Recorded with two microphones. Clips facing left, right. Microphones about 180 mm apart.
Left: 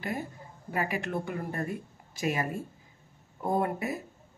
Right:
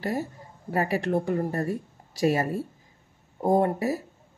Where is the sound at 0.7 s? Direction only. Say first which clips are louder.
Right 6 dB; 40° right (ahead or behind).